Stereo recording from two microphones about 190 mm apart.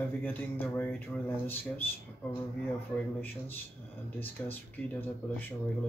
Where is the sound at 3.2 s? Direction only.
10° left (ahead or behind).